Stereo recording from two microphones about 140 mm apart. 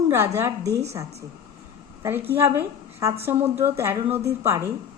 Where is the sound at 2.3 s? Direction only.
20° right (ahead or behind).